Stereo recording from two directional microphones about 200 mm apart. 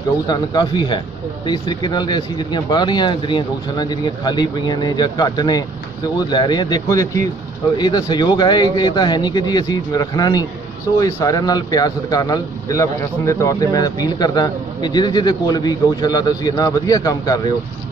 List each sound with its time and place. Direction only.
0.3 s a man's voice: 20° left (ahead or behind)